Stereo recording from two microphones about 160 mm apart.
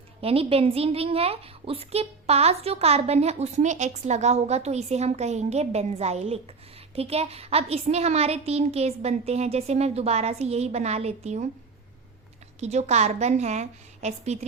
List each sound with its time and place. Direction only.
0.2 s a woman's voice: 35° right (ahead or behind)
12.5 s a woman's voice: 45° right (ahead or behind)